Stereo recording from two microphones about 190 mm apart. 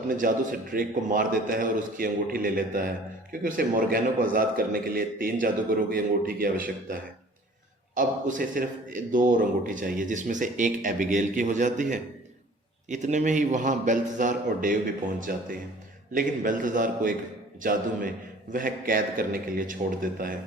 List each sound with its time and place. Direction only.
0.1 s a man's voice: 45° right (ahead or behind)
7.9 s a man's voice: 45° right (ahead or behind)